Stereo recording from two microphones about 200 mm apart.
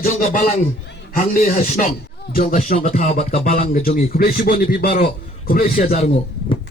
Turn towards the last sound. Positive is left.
turn(degrees=35)  # may be behind; listen again after turning